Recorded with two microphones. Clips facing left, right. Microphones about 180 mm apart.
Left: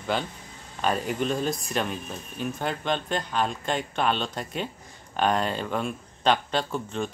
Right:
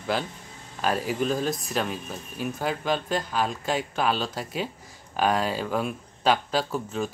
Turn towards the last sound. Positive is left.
turn(degrees=-5)  # may be behind; listen again after turning